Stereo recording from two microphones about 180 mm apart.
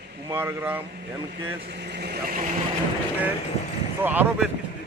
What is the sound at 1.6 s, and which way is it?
Speech, 70° right (ahead or behind).